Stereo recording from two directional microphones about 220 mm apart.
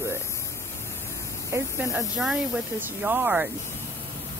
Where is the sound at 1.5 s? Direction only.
10° right (ahead or behind).